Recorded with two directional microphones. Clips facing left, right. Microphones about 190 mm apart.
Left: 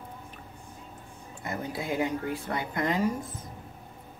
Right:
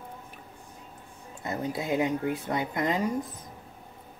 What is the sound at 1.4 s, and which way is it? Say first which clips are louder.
A woman's voice: right 2 dB; 20° right (ahead or behind).